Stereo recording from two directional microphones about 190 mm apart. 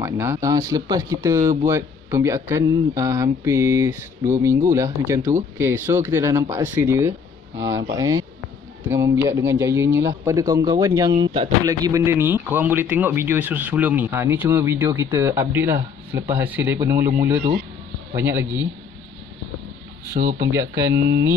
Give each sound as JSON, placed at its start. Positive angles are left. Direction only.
{"t": 0.0, "sound": "speech", "side_deg": -15}
{"t": 7.5, "sound": "speech", "side_deg": -70}
{"t": 7.9, "sound": "speech", "side_deg": -15}
{"t": 11.1, "sound": "speech", "side_deg": -30}
{"t": 11.6, "sound": "speech", "side_deg": -15}
{"t": 20.3, "sound": "speech", "side_deg": -15}
{"t": 20.9, "sound": "speech", "side_deg": -65}